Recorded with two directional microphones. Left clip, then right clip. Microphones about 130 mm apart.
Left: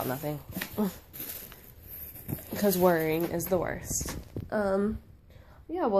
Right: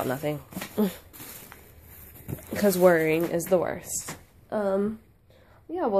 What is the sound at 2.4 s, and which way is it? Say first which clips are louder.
Speech: right 5 dB; 30° right (ahead or behind).